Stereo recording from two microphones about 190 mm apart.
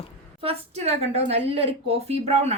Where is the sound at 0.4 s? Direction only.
35° right (ahead or behind).